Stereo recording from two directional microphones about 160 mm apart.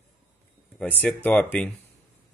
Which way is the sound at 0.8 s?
10° left (ahead or behind).